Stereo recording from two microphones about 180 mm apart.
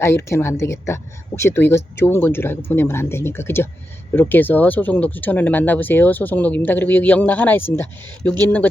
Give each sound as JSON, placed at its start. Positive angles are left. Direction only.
{"t": 0.0, "sound": "speech", "side_deg": 15}